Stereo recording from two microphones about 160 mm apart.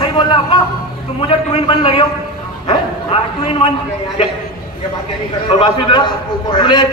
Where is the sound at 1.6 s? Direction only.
30° left (ahead or behind).